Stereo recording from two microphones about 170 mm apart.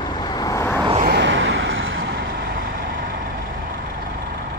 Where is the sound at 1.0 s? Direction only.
85° right.